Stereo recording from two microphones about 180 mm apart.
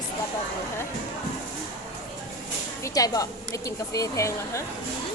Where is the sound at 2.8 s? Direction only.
20° left (ahead or behind).